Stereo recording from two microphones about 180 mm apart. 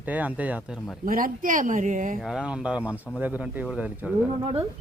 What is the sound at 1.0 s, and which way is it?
Speech, 50° right (ahead or behind).